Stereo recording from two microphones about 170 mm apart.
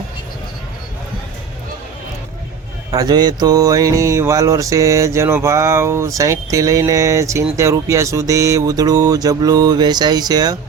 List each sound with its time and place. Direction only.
2.9 s mantra: 20° right (ahead or behind)